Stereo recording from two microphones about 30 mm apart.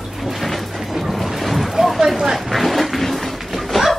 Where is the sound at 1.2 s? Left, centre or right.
Centre.